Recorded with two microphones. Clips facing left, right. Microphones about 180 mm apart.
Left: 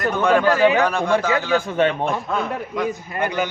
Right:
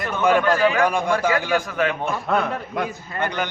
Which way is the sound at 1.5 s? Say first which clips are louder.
Left 3 dB; 30° left (ahead or behind).